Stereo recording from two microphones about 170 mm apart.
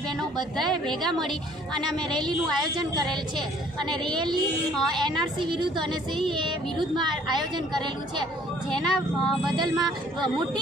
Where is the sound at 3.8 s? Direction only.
5° left (ahead or behind).